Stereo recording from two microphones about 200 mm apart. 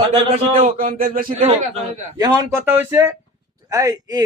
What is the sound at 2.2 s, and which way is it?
Speech, 10° right (ahead or behind).